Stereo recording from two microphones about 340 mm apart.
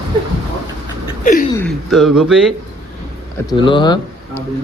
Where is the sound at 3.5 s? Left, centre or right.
Centre.